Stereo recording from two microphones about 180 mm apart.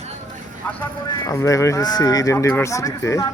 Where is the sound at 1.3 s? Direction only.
15° left (ahead or behind).